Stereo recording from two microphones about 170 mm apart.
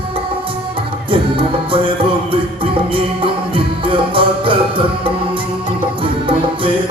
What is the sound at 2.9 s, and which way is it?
Music, 30° right (ahead or behind).